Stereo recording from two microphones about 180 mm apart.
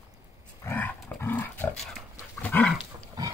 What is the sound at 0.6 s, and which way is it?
Dog, 10° left (ahead or behind).